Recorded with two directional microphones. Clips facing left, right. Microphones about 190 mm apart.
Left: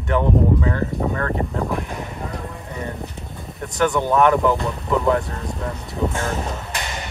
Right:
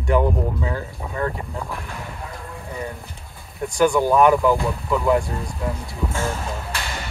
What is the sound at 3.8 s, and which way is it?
Speech, 5° right (ahead or behind).